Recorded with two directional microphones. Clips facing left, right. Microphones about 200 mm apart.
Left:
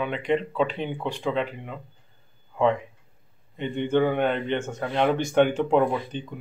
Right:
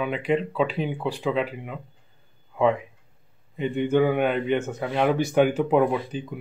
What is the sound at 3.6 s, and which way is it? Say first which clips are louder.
Speech: right 2 dB; 10° right (ahead or behind).